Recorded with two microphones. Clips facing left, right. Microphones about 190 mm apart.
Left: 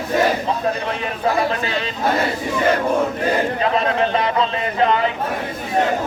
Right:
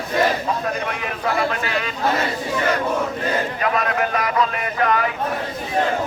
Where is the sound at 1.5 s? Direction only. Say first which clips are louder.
Left 2 dB; 30° left (ahead or behind).